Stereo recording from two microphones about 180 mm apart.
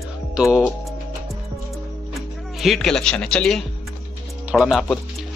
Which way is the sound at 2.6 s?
Centre (ahead or behind).